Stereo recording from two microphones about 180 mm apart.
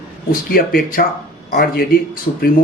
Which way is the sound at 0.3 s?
55° left (ahead or behind).